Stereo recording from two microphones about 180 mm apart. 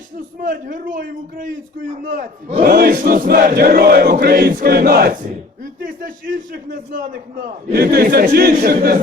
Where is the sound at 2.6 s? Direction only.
55° right (ahead or behind).